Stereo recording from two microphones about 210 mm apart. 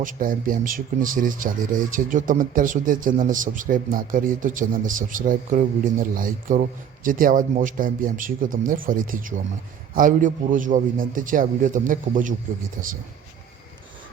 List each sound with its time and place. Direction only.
0.0 s speech: 40° right (ahead or behind)